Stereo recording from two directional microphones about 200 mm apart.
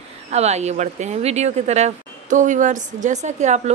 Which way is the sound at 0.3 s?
35° right (ahead or behind).